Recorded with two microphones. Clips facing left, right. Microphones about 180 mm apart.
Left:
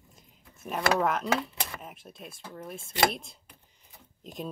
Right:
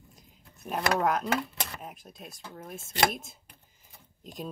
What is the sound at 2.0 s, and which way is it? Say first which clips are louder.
Speech: left 1 dB; 40° right (ahead or behind).